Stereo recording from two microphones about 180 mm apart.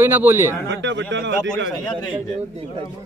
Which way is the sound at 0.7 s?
85° right.